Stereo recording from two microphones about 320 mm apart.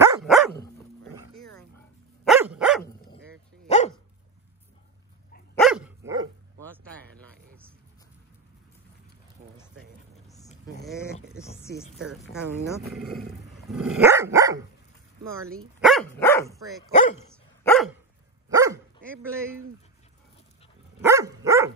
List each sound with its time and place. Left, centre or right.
0.0 s dog: centre
1.3 s a sound: centre
2.2 s dog: centre
3.6 s dog: left
5.6 s dog: centre
11.6 s a sound: centre
12.0 s a woman's voice: centre
15.8 s dog: centre
17.6 s dog: centre
18.5 s dog: centre
21.0 s dog: centre